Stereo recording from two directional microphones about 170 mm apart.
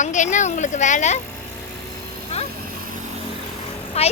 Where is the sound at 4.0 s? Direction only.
35° left (ahead or behind).